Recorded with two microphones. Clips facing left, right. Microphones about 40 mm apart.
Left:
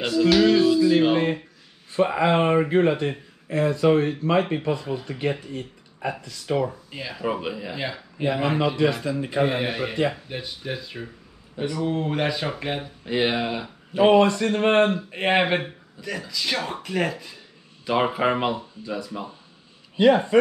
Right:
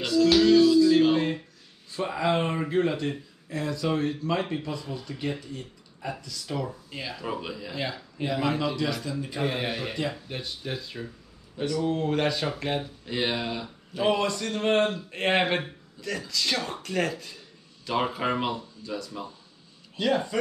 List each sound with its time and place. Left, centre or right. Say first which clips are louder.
0.0 s music: left 2 dB; left
1.9 s speech: left 6 dB; left
6.9 s speech: left 5 dB; centre
8.3 s speech: left 4 dB; left
9.4 s speech: left 6 dB; centre
9.9 s speech: left 7 dB; left
10.2 s speech: left 3 dB; centre; by 15.0 s left
15.0 s speech: left 3 dB; centre; by 20.3 s left